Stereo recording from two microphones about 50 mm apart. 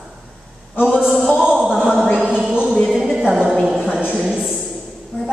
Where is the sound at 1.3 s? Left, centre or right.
Right.